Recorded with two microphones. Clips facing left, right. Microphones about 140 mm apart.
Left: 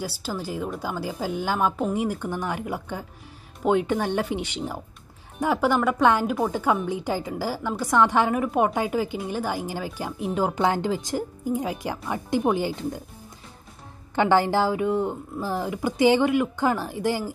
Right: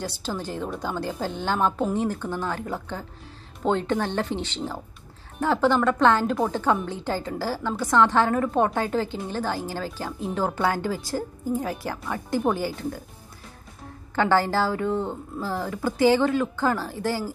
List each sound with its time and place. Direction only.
0.0 s a woman's voice: 10° left (ahead or behind)
14.1 s a woman's voice: 15° left (ahead or behind)